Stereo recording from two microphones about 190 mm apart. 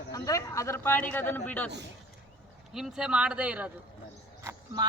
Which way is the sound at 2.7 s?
5° right (ahead or behind).